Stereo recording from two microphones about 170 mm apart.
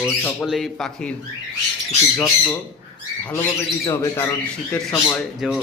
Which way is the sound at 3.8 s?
20° left (ahead or behind).